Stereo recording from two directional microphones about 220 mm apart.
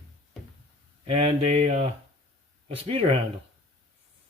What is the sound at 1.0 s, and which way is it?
Speech, 30° right (ahead or behind).